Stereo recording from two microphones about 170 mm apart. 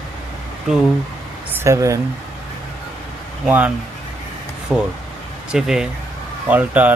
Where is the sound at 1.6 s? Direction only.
15° right (ahead or behind).